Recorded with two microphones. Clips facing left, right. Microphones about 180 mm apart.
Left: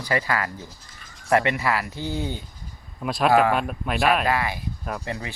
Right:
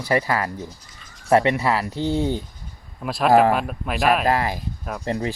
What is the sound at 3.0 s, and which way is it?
Speech, centre (ahead or behind).